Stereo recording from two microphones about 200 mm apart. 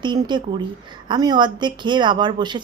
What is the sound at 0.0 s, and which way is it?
A woman's voice, 20° right (ahead or behind).